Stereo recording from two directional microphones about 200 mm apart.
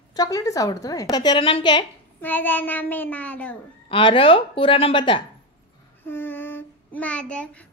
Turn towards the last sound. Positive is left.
turn(degrees=5)  # may be behind; listen again after turning